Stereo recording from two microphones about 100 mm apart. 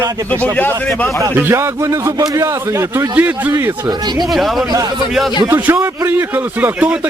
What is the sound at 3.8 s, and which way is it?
Speech, 45° right (ahead or behind).